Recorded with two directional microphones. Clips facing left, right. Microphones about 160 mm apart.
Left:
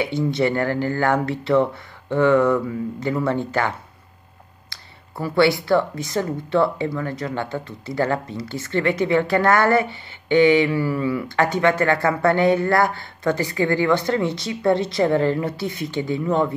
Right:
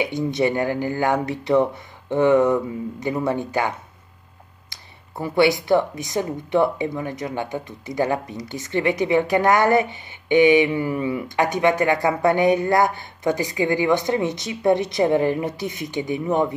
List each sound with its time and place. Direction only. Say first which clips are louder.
0.0 s speech: even; 15° right (ahead or behind)